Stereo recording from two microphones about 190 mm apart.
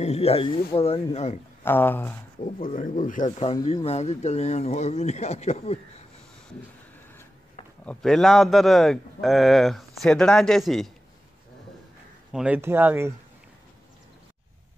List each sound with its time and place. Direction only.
0.0 s speech: 35° left (ahead or behind)
1.6 s speech: 10° left (ahead or behind)
2.8 s speech: 45° left (ahead or behind)
7.8 s a man's voice: 5° left (ahead or behind)
12.3 s speech: 5° right (ahead or behind)